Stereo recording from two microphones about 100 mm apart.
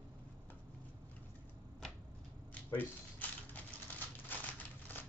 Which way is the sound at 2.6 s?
20° left (ahead or behind).